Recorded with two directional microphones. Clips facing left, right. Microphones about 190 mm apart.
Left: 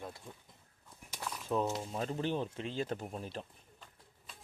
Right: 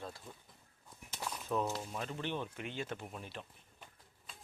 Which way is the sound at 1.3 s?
Centre (ahead or behind).